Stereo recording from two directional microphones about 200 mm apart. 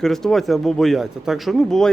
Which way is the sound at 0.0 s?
Centre (ahead or behind).